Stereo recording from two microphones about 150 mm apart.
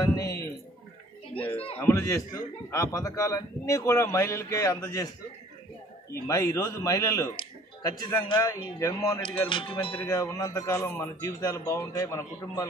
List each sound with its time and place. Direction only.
0.0 s a sound: 25° left (ahead or behind)
1.4 s speech: 40° left (ahead or behind)
1.8 s a man's voice: 20° left (ahead or behind)
6.2 s a man's voice: 20° left (ahead or behind)
8.4 s a man's voice: 20° left (ahead or behind)
9.2 s speech: 35° left (ahead or behind)
10.0 s a man's voice: 20° left (ahead or behind)